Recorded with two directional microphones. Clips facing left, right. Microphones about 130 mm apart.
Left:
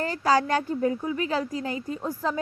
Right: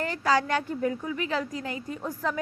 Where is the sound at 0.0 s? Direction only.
35° left (ahead or behind).